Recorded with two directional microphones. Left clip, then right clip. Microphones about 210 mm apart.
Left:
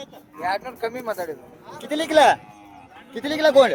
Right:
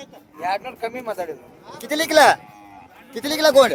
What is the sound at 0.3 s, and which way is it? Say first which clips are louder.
A man's voice: right 1 dB; 15° right (ahead or behind).